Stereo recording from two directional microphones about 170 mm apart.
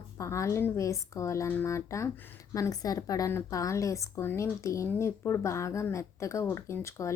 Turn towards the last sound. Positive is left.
turn(degrees=15)  # may be behind; listen again after turning